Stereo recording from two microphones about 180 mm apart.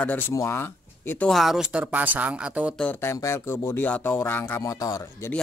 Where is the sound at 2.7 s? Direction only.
10° left (ahead or behind).